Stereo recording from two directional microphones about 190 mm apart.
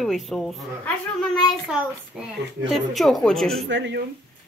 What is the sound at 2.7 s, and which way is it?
Speech, centre (ahead or behind).